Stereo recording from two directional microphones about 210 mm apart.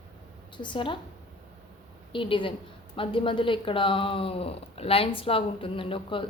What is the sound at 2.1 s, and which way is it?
Speech, 25° left (ahead or behind).